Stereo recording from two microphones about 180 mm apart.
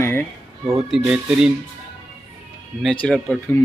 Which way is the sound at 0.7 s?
Centre (ahead or behind).